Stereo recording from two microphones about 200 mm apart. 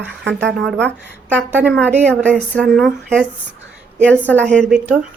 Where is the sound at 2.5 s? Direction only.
5° right (ahead or behind).